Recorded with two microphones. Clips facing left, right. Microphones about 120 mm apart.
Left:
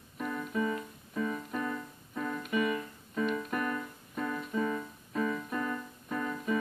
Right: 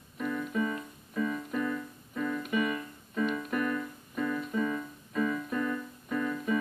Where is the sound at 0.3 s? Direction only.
25° left (ahead or behind).